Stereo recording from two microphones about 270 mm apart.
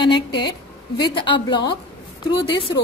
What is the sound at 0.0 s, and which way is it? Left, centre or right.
A woman's voice, centre.